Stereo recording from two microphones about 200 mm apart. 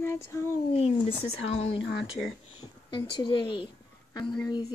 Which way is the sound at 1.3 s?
75° left (ahead or behind).